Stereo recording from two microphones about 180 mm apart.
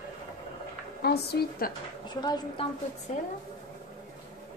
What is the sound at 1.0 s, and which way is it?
Speech, 60° left (ahead or behind).